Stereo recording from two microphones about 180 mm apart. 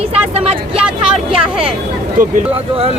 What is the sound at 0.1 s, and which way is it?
Speech, 35° right (ahead or behind).